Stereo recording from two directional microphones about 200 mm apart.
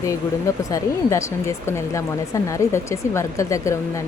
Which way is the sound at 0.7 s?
15° left (ahead or behind).